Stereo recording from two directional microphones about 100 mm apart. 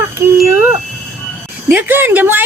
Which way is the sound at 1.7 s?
20° right (ahead or behind).